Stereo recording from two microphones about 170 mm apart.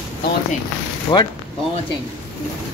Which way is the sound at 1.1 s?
25° left (ahead or behind).